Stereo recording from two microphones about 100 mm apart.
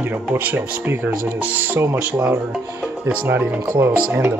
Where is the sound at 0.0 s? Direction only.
20° right (ahead or behind).